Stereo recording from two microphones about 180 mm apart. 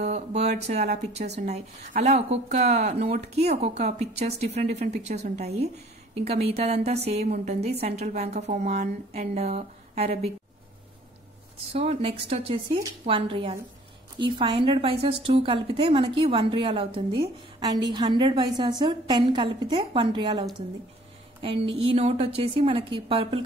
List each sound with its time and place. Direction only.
0.0 s a woman's voice: 40° right (ahead or behind)
11.7 s a woman's voice: 35° right (ahead or behind)